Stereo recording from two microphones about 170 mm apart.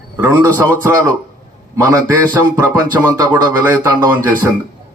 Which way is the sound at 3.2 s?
25° right (ahead or behind).